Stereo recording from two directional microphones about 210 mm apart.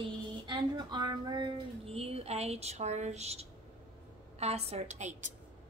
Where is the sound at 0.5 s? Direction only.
20° right (ahead or behind).